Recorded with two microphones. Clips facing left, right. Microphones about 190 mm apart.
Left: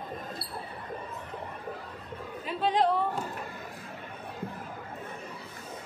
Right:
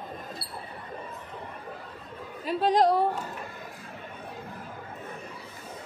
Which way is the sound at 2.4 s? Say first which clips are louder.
Right 4 dB; 40° right (ahead or behind).